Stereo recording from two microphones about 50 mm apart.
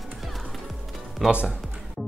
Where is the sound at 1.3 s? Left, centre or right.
Right.